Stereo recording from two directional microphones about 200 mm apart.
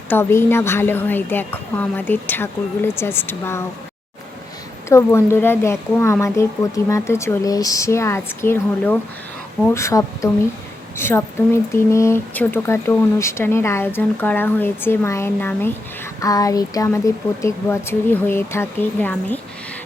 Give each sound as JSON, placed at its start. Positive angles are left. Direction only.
{"t": 0.1, "sound": "speech", "side_deg": 10}
{"t": 4.9, "sound": "speech", "side_deg": 15}